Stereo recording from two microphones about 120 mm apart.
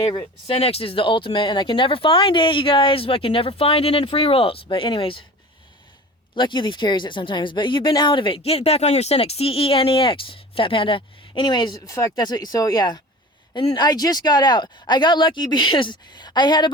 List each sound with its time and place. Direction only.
0.0 s speech: 45° left (ahead or behind)
6.3 s speech: 40° left (ahead or behind)